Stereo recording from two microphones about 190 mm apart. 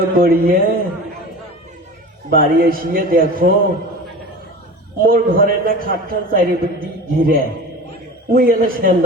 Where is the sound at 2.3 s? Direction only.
50° right (ahead or behind).